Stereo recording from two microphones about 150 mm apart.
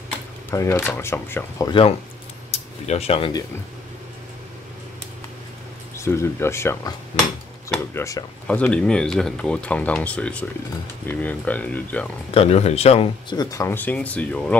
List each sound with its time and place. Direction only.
0.5 s speech: 15° left (ahead or behind)
1.7 s speech: 35° left (ahead or behind)
2.5 s a sound: 45° left (ahead or behind)
5.9 s speech: 20° left (ahead or behind)
8.5 s speech: 10° left (ahead or behind)
12.4 s speech: 45° left (ahead or behind); by 14.6 s 10° left (ahead or behind)